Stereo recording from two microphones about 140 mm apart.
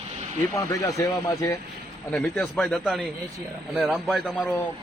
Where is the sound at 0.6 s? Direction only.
20° left (ahead or behind).